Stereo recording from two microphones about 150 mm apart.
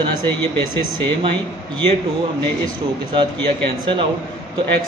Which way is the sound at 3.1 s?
35° right (ahead or behind).